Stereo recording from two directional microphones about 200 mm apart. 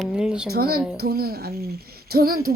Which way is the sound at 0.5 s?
50° right (ahead or behind).